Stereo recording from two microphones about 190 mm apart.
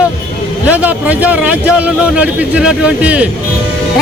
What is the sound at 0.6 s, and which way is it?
Speech, 10° right (ahead or behind).